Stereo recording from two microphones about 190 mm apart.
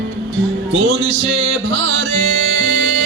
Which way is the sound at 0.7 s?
80° right.